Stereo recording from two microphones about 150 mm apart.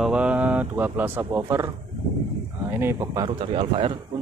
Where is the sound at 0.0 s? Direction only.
5° right (ahead or behind).